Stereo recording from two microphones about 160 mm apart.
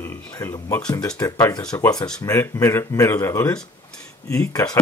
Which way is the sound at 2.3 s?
20° left (ahead or behind).